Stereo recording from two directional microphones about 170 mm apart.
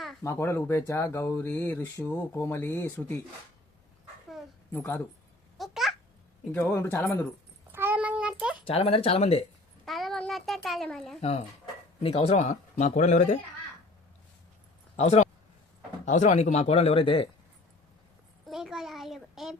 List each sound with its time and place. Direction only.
0.2 s speech: 15° left (ahead or behind)
4.7 s speech: 10° left (ahead or behind)
5.5 s babbling: centre (ahead or behind)
6.5 s speech: 10° left (ahead or behind)
7.7 s child singing: 10° right (ahead or behind)
8.6 s speech: 35° left (ahead or behind)
9.8 s a child's voice: centre (ahead or behind)
11.2 s speech: 40° left (ahead or behind)
14.9 s speech: 40° left (ahead or behind)
18.4 s a child's voice: centre (ahead or behind)